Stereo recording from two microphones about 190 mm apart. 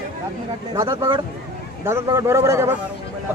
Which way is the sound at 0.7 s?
15° right (ahead or behind).